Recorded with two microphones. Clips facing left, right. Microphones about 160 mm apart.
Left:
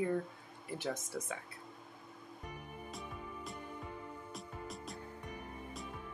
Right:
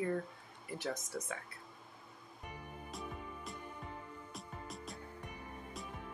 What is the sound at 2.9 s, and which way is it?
Music, centre (ahead or behind).